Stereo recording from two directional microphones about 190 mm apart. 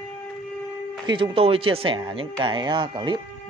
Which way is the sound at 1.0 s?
25° right (ahead or behind).